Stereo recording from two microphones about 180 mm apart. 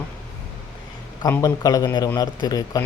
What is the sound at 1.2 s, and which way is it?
Speech, 20° left (ahead or behind).